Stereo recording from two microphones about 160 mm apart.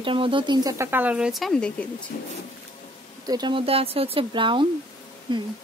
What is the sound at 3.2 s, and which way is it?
Speech, 25° right (ahead or behind).